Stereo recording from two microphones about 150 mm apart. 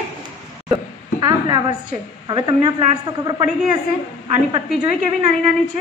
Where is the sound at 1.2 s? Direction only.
30° right (ahead or behind).